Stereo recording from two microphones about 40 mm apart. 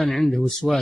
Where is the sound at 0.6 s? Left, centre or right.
Centre.